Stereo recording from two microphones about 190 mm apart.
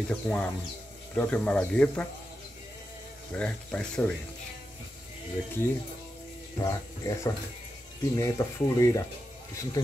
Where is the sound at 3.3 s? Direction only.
5° left (ahead or behind).